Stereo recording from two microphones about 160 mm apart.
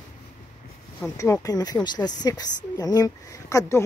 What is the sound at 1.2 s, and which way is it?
Speech, 20° left (ahead or behind).